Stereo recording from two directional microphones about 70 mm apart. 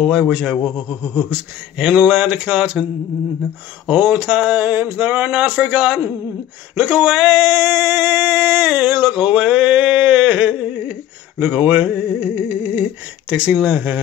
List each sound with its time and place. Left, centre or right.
0.0 s speech: centre
3.8 s a sound: right
13.3 s speech: centre